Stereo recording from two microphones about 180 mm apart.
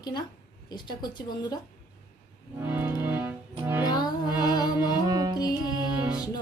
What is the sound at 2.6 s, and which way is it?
Music, 10° right (ahead or behind).